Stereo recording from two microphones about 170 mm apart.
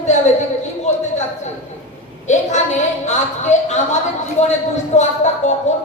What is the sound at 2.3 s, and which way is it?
A woman's voice, 45° left (ahead or behind).